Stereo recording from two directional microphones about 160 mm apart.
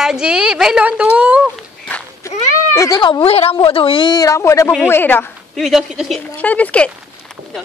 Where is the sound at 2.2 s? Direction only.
20° left (ahead or behind).